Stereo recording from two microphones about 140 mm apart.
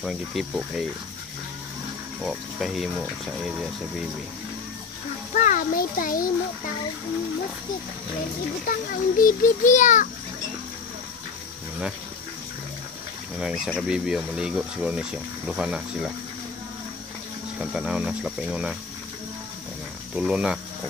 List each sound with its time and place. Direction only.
0.0 s speech: centre (ahead or behind)
2.2 s speech: centre (ahead or behind)
5.3 s a sound: 60° left (ahead or behind); by 6.3 s 80° left
8.6 s a child's voice: 75° left (ahead or behind); by 10.0 s 60° left (ahead or behind)
13.4 s speech: 5° right (ahead or behind)
17.6 s speech: 5° right (ahead or behind)
20.2 s speech: 5° right (ahead or behind)